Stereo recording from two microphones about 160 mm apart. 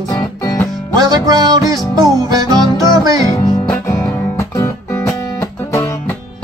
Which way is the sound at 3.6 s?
20° left (ahead or behind).